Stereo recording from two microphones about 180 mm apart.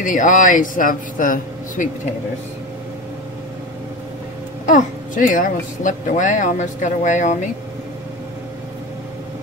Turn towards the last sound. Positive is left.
turn(degrees=45)  # may be behind; listen again after turning